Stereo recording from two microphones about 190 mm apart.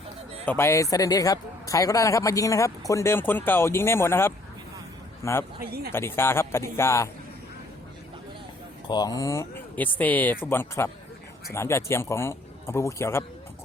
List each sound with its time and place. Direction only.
0.4 s speech: 15° left (ahead or behind)
8.9 s speech: 20° left (ahead or behind)